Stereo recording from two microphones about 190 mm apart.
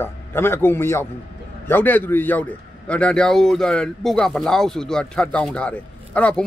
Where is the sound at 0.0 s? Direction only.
10° left (ahead or behind).